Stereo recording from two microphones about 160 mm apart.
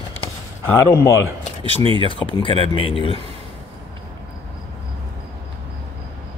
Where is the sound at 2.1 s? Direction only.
35° left (ahead or behind).